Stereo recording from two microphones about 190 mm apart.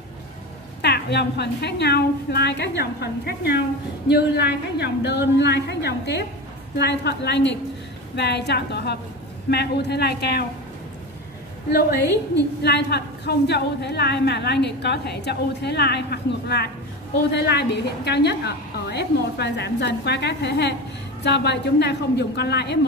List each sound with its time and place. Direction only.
0.8 s a woman's voice: 60° left (ahead or behind)
12.6 s a woman's voice: 60° left (ahead or behind)